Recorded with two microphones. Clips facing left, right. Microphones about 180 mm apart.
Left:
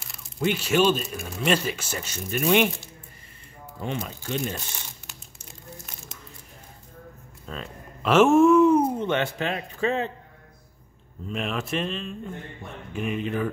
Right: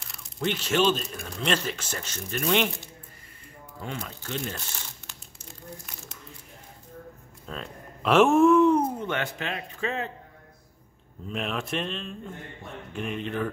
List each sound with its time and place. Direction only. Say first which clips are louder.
0.0 s speech: left 3 dB; 5° left (ahead or behind)
3.6 s crumpling: left 5 dB; 20° left (ahead or behind)
7.4 s speech: left 1 dB; centre (ahead or behind)
8.9 s speech: left 5 dB; 25° left (ahead or behind)
11.2 s speech: left 2 dB; centre (ahead or behind)